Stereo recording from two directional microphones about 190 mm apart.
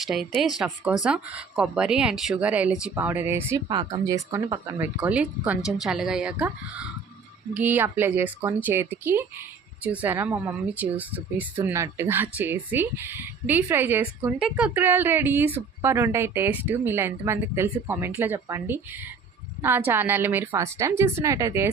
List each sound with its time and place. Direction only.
0.0 s speech: centre (ahead or behind)
3.7 s speech: 25° right (ahead or behind)